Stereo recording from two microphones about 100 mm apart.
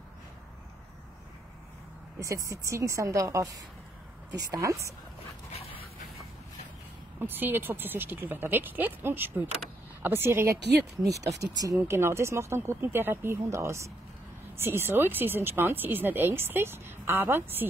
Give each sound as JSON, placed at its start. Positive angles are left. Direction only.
{"t": 2.2, "sound": "speech", "side_deg": -30}
{"t": 5.5, "sound": "dog", "side_deg": 75}
{"t": 7.2, "sound": "speech", "side_deg": -20}